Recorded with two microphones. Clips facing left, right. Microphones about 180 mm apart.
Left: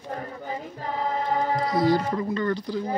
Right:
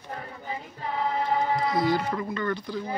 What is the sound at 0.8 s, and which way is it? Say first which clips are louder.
Music: even; 40° left (ahead or behind).